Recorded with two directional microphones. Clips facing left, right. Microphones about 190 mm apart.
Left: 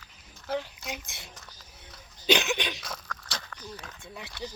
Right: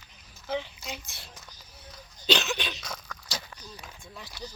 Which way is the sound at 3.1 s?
10° right (ahead or behind).